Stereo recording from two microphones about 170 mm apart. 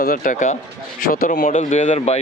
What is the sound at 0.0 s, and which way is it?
Speech, 55° left (ahead or behind).